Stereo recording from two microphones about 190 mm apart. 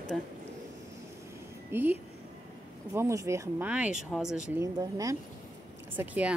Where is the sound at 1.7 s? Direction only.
10° right (ahead or behind).